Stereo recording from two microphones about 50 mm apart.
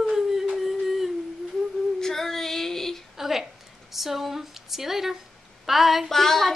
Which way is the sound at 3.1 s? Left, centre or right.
Centre.